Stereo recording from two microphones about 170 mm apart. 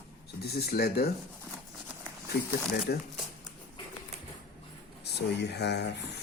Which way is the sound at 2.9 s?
75° left (ahead or behind).